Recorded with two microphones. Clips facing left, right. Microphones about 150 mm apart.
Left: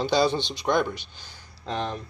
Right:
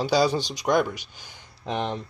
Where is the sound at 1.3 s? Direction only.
20° right (ahead or behind).